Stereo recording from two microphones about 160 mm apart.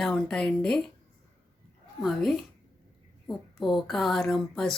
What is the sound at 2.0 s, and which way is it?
Speech, centre (ahead or behind).